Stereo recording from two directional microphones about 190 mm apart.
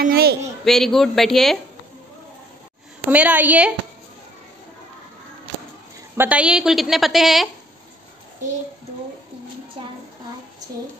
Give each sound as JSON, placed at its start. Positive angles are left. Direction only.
{"t": 0.0, "sound": "a man's voice", "side_deg": -55}
{"t": 0.7, "sound": "a woman's voice", "side_deg": 0}
{"t": 3.1, "sound": "a woman's voice", "side_deg": -10}
{"t": 6.1, "sound": "a woman's voice", "side_deg": -10}
{"t": 9.8, "sound": "a woman's voice", "side_deg": -30}